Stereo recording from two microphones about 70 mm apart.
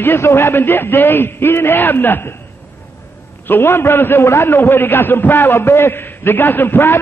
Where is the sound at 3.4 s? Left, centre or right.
Left.